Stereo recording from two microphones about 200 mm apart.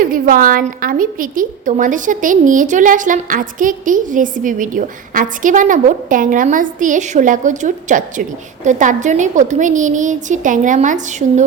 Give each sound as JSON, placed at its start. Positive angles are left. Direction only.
{"t": 0.0, "sound": "a woman's voice", "side_deg": -45}